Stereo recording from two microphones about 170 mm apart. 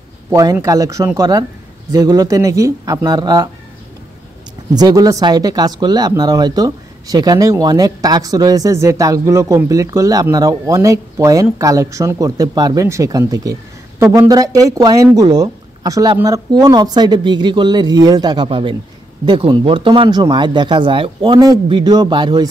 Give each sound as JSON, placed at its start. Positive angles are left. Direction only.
{"t": 0.3, "sound": "speech", "side_deg": -20}
{"t": 4.7, "sound": "speech", "side_deg": -25}